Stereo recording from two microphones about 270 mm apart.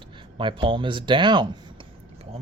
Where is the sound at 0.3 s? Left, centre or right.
Centre.